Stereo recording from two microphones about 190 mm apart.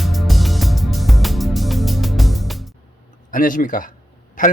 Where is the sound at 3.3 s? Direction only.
45° left (ahead or behind).